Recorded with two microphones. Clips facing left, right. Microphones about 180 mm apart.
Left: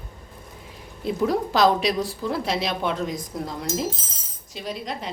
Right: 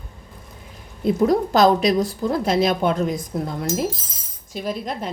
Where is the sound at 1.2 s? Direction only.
45° right (ahead or behind).